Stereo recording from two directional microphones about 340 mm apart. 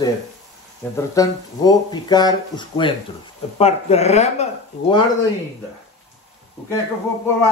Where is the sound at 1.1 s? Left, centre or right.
Centre.